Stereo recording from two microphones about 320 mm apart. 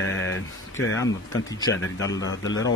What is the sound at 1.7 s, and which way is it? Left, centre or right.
Speech, left.